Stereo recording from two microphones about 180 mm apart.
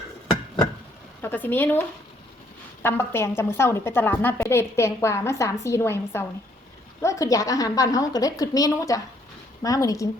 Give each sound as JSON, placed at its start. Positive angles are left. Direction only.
{"t": 1.2, "sound": "a woman's voice", "side_deg": 10}
{"t": 2.8, "sound": "a woman's voice", "side_deg": 15}